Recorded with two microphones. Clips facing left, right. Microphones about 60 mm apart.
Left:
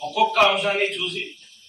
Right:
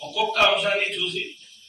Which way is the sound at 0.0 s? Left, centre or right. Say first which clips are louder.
Left 3 dB; left.